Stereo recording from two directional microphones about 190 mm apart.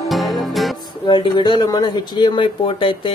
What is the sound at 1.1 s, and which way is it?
Speech, 25° left (ahead or behind).